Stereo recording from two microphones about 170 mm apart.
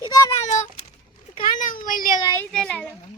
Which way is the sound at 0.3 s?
45° left (ahead or behind).